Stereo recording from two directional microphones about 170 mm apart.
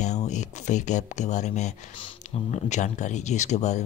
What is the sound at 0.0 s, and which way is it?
Speech, 45° left (ahead or behind).